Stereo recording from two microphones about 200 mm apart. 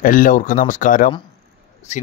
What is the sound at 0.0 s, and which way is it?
Speech, 45° left (ahead or behind).